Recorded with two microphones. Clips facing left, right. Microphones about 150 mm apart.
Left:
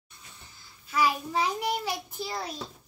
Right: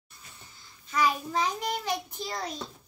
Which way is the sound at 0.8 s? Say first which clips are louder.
Even; 5° left (ahead or behind).